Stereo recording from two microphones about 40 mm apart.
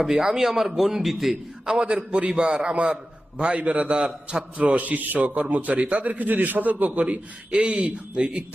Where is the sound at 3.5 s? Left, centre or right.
Right.